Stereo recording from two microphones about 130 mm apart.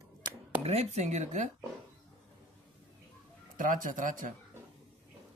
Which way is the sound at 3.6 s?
90° right.